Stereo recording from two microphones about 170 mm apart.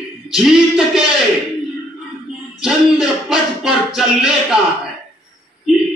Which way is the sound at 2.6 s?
5° right (ahead or behind).